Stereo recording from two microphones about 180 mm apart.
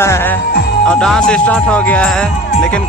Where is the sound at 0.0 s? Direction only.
15° left (ahead or behind).